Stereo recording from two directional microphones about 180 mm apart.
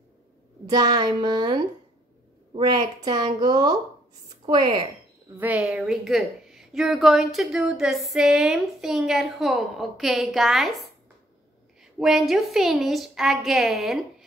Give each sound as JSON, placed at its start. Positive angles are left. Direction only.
{"t": 0.7, "sound": "a woman's voice", "side_deg": -20}
{"t": 5.4, "sound": "a woman's voice", "side_deg": -5}
{"t": 11.8, "sound": "a woman's voice", "side_deg": 0}